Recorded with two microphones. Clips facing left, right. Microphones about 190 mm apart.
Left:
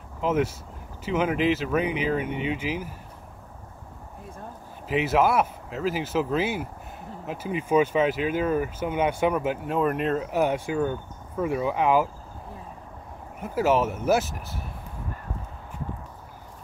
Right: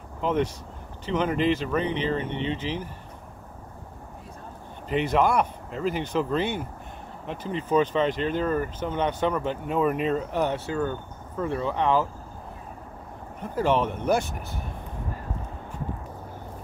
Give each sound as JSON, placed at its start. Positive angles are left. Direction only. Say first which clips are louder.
{"t": 0.2, "sound": "speech", "louder": "left 1 dB", "side_deg": 5}
{"t": 4.8, "sound": "speech", "louder": "left 1 dB", "side_deg": 5}
{"t": 13.4, "sound": "speech", "louder": "left 1 dB", "side_deg": 5}